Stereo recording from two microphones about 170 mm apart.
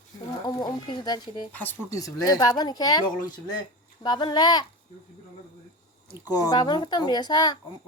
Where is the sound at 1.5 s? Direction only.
10° left (ahead or behind).